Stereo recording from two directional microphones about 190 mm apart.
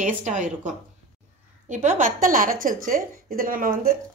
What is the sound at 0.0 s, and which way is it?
A woman's voice, 40° right (ahead or behind).